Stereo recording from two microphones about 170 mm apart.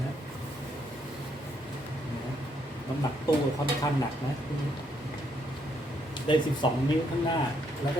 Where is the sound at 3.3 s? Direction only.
20° left (ahead or behind).